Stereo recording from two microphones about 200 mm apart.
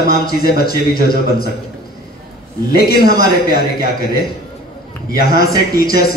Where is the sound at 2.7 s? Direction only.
50° left (ahead or behind).